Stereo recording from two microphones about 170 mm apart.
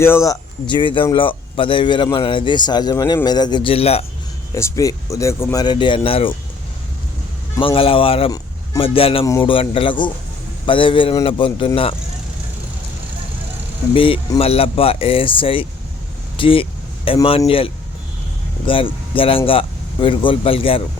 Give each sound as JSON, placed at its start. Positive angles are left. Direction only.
{"t": 0.0, "sound": "speech", "side_deg": 15}
{"t": 4.5, "sound": "speech", "side_deg": 20}
{"t": 7.6, "sound": "speech", "side_deg": 30}
{"t": 9.2, "sound": "speech", "side_deg": 20}
{"t": 9.5, "sound": "speech", "side_deg": 30}
{"t": 13.9, "sound": "speech", "side_deg": 30}